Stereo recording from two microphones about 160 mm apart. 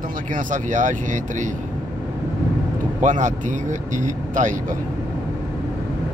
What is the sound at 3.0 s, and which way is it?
Speech, 50° right (ahead or behind).